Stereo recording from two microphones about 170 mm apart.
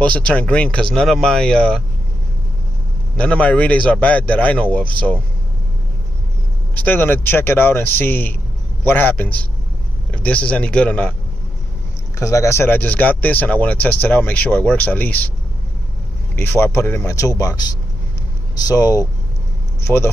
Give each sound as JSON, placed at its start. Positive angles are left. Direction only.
{"t": 0.0, "sound": "speech", "side_deg": 5}
{"t": 3.2, "sound": "speech", "side_deg": 5}
{"t": 6.7, "sound": "speech", "side_deg": 10}
{"t": 12.2, "sound": "speech", "side_deg": 15}
{"t": 16.3, "sound": "speech", "side_deg": 15}
{"t": 18.7, "sound": "speech", "side_deg": 20}